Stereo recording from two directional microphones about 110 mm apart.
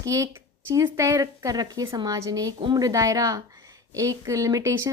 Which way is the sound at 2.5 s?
45° right (ahead or behind).